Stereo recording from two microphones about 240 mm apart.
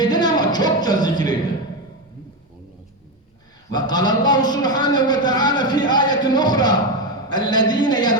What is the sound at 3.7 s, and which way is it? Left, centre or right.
A man's voice, centre.